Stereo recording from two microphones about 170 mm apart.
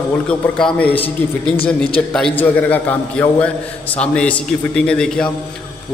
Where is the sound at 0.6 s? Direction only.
10° left (ahead or behind).